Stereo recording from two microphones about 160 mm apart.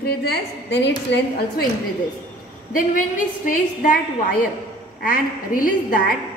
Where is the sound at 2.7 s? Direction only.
55° left (ahead or behind).